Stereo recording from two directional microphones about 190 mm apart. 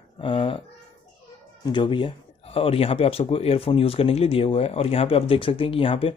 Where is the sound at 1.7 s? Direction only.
25° left (ahead or behind).